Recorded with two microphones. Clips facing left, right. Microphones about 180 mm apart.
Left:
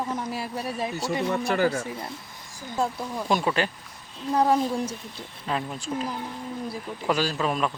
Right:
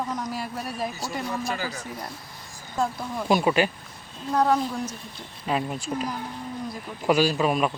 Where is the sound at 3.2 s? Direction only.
10° right (ahead or behind).